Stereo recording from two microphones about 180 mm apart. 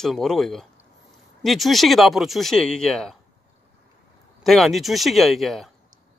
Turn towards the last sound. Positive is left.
turn(degrees=0)  # may be behind; listen again after turning